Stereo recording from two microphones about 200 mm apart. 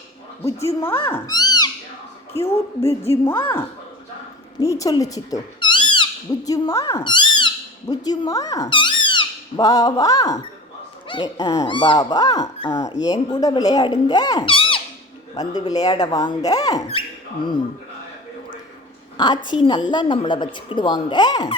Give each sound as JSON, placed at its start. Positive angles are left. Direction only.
{"t": 0.4, "sound": "speech", "side_deg": 15}
{"t": 2.3, "sound": "speech", "side_deg": 30}
{"t": 4.6, "sound": "speech", "side_deg": 15}
{"t": 19.1, "sound": "a woman's voice", "side_deg": 20}